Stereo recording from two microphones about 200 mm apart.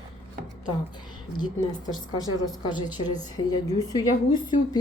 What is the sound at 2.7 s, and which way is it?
A woman's voice, 20° left (ahead or behind).